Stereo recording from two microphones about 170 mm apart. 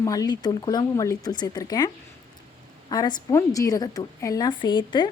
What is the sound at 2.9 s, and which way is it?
A woman's voice, 20° left (ahead or behind).